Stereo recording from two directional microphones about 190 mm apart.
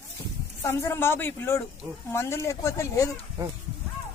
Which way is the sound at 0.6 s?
15° left (ahead or behind).